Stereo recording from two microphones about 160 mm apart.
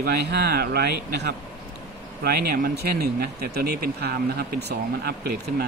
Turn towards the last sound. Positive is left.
turn(degrees=-80)